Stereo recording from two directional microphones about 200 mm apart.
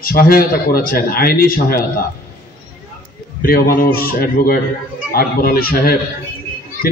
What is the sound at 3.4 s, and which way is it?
A man's voice, 45° left (ahead or behind).